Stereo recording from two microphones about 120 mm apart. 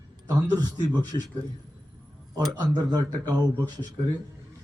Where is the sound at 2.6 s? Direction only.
35° right (ahead or behind).